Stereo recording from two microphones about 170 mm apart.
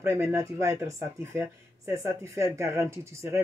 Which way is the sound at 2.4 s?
15° right (ahead or behind).